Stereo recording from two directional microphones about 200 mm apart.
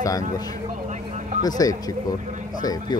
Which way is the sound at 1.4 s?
20° left (ahead or behind).